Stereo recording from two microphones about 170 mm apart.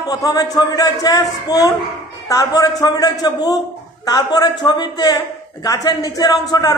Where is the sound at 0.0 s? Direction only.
20° left (ahead or behind).